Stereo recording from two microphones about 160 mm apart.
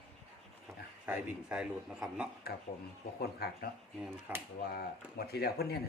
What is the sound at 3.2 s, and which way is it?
Speech, 75° left (ahead or behind).